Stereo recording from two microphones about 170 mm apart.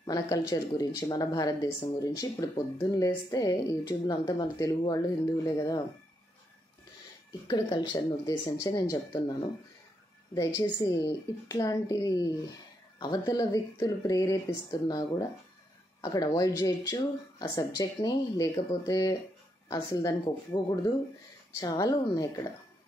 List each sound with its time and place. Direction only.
0.0 s speech: 25° left (ahead or behind)
7.4 s speech: 25° left (ahead or behind)